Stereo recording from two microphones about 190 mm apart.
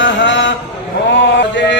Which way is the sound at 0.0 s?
75° left (ahead or behind).